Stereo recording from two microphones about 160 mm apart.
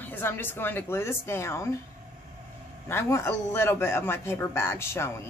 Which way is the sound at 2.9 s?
15° left (ahead or behind).